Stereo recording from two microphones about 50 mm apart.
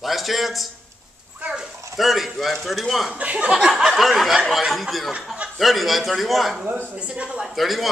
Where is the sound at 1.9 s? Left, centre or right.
Centre.